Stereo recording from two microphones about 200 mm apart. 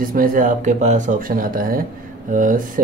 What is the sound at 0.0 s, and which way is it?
Speech, 45° right (ahead or behind).